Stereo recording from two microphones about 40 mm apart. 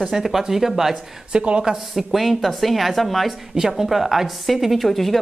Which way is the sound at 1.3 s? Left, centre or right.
Right.